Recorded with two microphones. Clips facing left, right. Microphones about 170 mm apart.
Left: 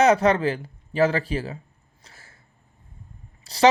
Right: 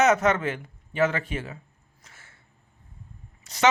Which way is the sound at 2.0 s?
35° left (ahead or behind).